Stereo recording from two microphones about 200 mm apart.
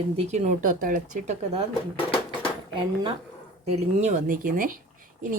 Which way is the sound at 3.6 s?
30° right (ahead or behind).